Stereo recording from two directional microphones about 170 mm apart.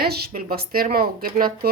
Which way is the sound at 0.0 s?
65° right (ahead or behind).